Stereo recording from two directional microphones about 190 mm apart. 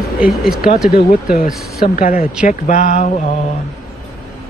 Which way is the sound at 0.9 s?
45° left (ahead or behind).